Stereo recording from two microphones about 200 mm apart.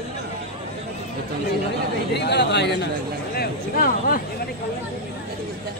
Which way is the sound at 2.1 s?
55° left (ahead or behind).